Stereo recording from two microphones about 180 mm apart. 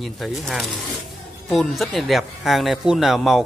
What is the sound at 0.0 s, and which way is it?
Speech, centre (ahead or behind).